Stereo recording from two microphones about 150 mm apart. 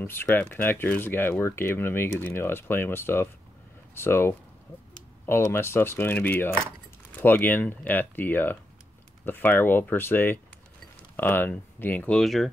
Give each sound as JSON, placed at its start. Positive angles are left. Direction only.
{"t": 0.0, "sound": "speech", "side_deg": 15}